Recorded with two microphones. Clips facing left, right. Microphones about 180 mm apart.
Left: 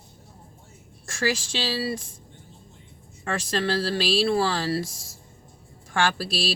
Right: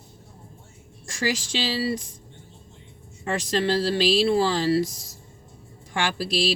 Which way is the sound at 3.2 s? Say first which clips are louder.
Right 2 dB; 20° right (ahead or behind).